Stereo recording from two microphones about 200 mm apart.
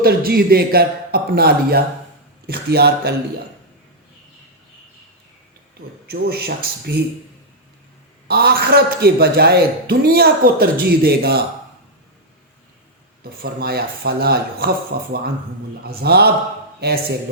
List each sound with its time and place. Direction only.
0.0 s a man's voice: 50° right (ahead or behind)
6.1 s a man's voice: 50° right (ahead or behind)
8.3 s a man's voice: 50° right (ahead or behind)
13.4 s a man's voice: 50° right (ahead or behind)